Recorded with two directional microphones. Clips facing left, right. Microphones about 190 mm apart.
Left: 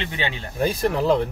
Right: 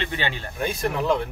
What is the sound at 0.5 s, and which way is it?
Speech, 35° left (ahead or behind).